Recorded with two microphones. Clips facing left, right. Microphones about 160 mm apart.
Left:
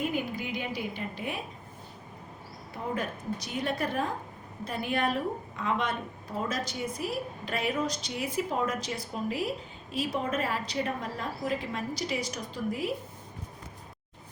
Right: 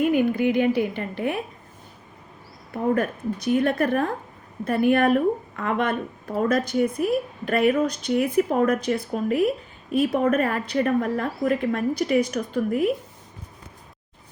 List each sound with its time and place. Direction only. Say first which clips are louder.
0.1 s a woman's voice: right 12 dB; 60° right (ahead or behind)
2.7 s a woman's voice: right 10 dB; 55° right (ahead or behind)